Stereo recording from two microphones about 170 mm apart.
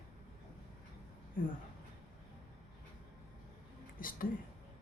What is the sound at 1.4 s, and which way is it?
Speech, 55° left (ahead or behind).